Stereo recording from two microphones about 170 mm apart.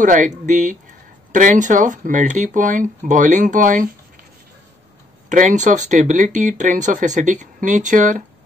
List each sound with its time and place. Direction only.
0.0 s speech: 50° right (ahead or behind)
5.3 s speech: 50° right (ahead or behind)